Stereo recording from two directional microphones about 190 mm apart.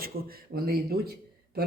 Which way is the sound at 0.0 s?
50° right (ahead or behind).